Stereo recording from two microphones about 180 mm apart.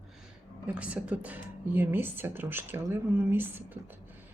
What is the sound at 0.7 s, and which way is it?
Speech, 5° right (ahead or behind).